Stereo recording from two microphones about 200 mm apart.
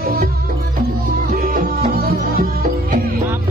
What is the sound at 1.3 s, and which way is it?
Music, 45° right (ahead or behind).